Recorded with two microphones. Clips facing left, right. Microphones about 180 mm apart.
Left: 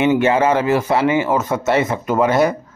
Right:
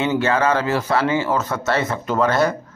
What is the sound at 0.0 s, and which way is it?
Speech, 20° left (ahead or behind).